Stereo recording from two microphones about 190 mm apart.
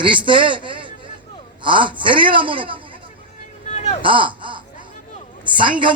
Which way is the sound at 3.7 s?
35° left (ahead or behind).